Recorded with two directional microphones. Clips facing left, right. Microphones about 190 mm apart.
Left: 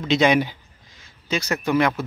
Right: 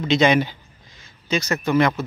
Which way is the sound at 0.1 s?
10° left (ahead or behind).